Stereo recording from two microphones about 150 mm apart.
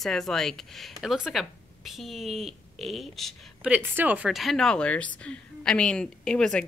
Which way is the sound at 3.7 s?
10° right (ahead or behind).